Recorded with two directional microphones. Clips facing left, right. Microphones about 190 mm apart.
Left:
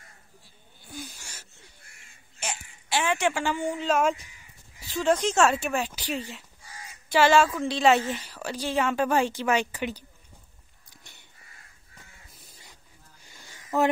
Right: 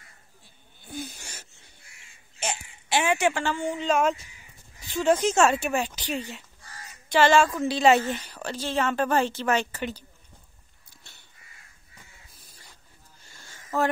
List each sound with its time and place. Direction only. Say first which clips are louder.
0.9 s wheeze: right 4 dB; 25° right (ahead or behind)
1.8 s crow: even; 55° left (ahead or behind)
2.4 s a sound: right 4 dB; 20° right (ahead or behind)
3.3 s speech: even; 10° left (ahead or behind)
4.9 s a woman's voice: right 2 dB; 5° right (ahead or behind); by 10.0 s 15° left (ahead or behind)
10.9 s crow: left 2 dB; 15° left (ahead or behind)
13.2 s wheeze: even; 15° left (ahead or behind)